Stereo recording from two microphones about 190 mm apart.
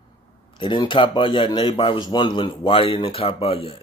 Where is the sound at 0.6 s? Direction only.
25° left (ahead or behind).